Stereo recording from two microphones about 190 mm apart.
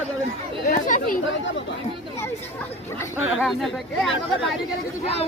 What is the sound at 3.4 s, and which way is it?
Speech, centre (ahead or behind).